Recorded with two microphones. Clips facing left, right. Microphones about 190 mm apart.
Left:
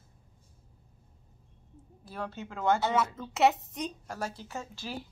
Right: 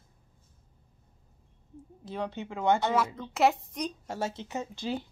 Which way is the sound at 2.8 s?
Centre (ahead or behind).